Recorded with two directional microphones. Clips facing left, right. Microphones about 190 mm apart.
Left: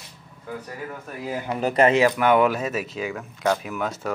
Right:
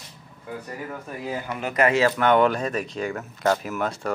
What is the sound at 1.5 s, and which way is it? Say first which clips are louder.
Speech: left 4 dB; 35° left (ahead or behind).